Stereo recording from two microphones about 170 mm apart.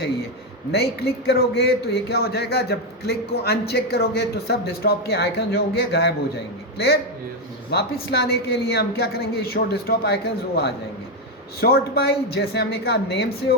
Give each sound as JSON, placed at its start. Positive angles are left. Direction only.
{"t": 0.7, "sound": "a man's voice", "side_deg": 70}